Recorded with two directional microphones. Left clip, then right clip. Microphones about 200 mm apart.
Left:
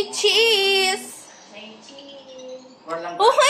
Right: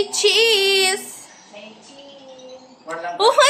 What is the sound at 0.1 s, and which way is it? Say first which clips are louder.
Female singing: right 1 dB; 10° right (ahead or behind).